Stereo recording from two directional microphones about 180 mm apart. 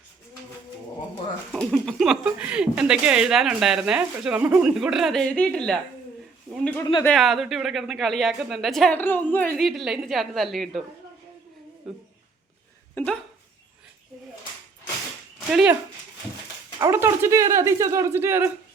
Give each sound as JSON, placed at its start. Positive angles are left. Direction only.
{"t": 1.5, "sound": "speech", "side_deg": 0}
{"t": 7.0, "sound": "speech", "side_deg": 0}
{"t": 11.9, "sound": "speech", "side_deg": 0}
{"t": 15.4, "sound": "speech", "side_deg": -5}
{"t": 16.8, "sound": "speech", "side_deg": -15}